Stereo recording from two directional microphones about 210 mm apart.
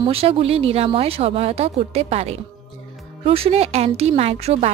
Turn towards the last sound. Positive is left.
turn(degrees=-30)  # may be behind; listen again after turning